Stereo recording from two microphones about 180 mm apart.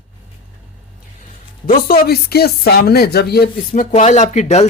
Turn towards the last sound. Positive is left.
turn(degrees=35)  # may be behind; listen again after turning